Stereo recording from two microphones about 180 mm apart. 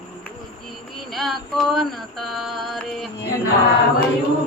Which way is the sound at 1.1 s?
Centre (ahead or behind).